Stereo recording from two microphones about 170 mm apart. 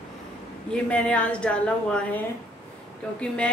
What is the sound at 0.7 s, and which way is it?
A woman's voice, 5° left (ahead or behind).